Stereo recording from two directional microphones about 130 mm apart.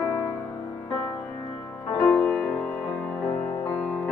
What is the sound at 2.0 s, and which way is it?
Music, 10° left (ahead or behind).